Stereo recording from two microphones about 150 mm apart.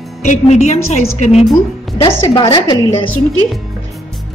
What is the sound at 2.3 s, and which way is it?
Speech, 30° left (ahead or behind).